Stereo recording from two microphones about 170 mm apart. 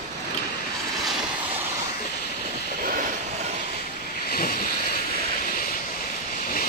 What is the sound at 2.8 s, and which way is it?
Vehicle, 55° right (ahead or behind).